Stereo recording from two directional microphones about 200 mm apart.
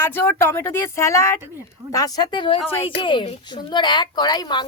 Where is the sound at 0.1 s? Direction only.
10° left (ahead or behind).